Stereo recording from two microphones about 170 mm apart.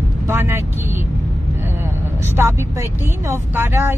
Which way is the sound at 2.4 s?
20° right (ahead or behind).